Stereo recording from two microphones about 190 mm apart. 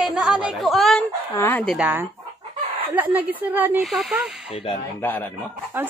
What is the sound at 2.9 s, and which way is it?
A woman's voice, 10° right (ahead or behind).